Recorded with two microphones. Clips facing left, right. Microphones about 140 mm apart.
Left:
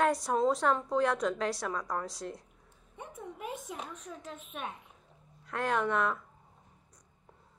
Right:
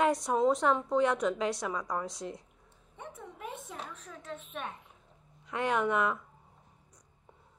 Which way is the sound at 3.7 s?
10° left (ahead or behind).